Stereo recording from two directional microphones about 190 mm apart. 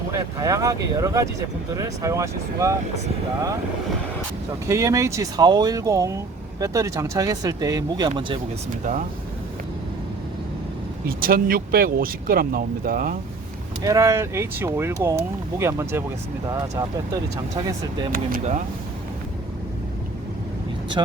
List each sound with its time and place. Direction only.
0.1 s speech: 15° right (ahead or behind)
4.7 s speech: 15° right (ahead or behind)
11.2 s speech: 50° right (ahead or behind)
13.8 s speech: 15° right (ahead or behind)
17.3 s speech: 15° right (ahead or behind)
18.1 s speech: 45° right (ahead or behind)